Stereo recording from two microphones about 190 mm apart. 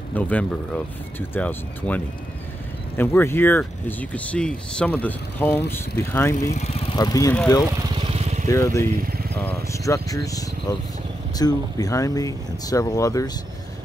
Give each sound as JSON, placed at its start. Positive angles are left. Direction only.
{"t": 0.1, "sound": "speech", "side_deg": 10}
{"t": 3.0, "sound": "speech", "side_deg": 15}
{"t": 6.5, "sound": "speech", "side_deg": 35}
{"t": 7.0, "sound": "speech", "side_deg": 20}
{"t": 8.0, "sound": "vehicle", "side_deg": -30}
{"t": 8.5, "sound": "speech", "side_deg": 15}
{"t": 9.0, "sound": "vehicle", "side_deg": -50}
{"t": 9.7, "sound": "speech", "side_deg": 15}